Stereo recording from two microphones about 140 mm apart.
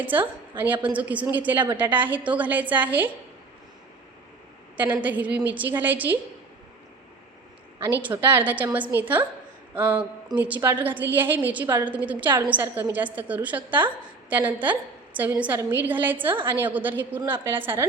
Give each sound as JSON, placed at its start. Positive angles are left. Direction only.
{"t": 0.0, "sound": "a woman's voice", "side_deg": -15}
{"t": 5.0, "sound": "a woman's voice", "side_deg": -10}
{"t": 7.9, "sound": "a woman's voice", "side_deg": -15}
{"t": 16.3, "sound": "a woman's voice", "side_deg": -35}
{"t": 16.6, "sound": "a woman's voice", "side_deg": -15}